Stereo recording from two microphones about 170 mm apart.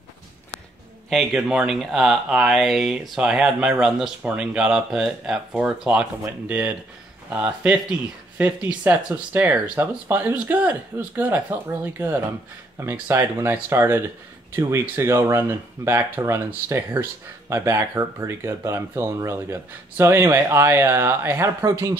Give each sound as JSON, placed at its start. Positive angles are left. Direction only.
{"t": 1.1, "sound": "speech", "side_deg": 0}